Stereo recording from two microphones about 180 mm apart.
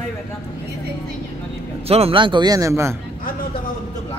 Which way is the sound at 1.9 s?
35° right (ahead or behind).